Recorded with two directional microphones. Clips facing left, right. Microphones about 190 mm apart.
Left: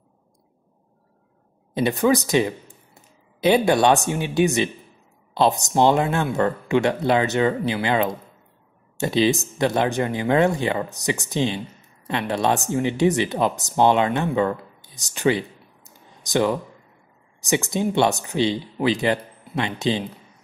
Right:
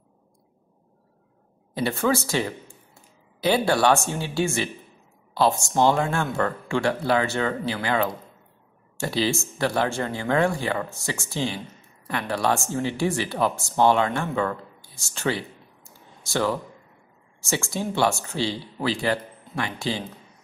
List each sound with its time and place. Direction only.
1.7 s speech: 20° left (ahead or behind)